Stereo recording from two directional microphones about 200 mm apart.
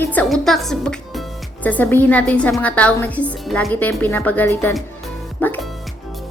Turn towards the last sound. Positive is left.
turn(degrees=0)  # may be behind; listen again after turning